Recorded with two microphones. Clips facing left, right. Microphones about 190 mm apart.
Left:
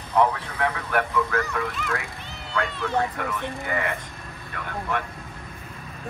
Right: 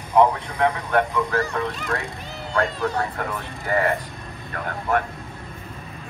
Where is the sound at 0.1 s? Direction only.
15° right (ahead or behind).